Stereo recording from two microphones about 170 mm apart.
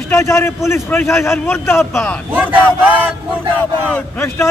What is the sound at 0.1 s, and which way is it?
A man's voice, 15° left (ahead or behind).